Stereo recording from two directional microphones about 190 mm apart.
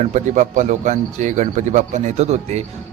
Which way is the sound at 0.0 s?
40° right (ahead or behind).